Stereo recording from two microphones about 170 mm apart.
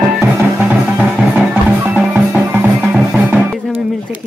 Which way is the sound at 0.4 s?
10° right (ahead or behind).